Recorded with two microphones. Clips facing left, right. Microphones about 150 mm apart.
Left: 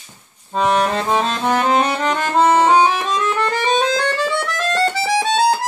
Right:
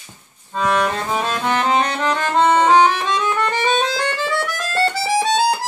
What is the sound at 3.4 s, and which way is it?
Music, centre (ahead or behind).